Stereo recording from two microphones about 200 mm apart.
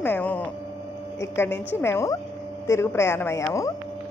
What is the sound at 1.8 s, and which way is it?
A woman's voice, 10° left (ahead or behind).